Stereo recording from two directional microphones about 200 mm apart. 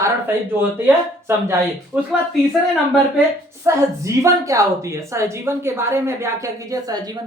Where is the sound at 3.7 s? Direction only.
15° right (ahead or behind).